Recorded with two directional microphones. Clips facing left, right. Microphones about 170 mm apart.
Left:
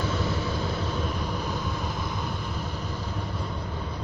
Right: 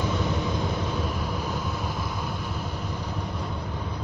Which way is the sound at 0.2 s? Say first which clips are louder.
Right 2 dB; 10° right (ahead or behind).